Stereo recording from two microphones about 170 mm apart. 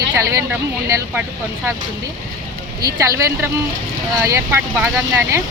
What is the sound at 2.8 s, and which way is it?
Speech, 20° right (ahead or behind).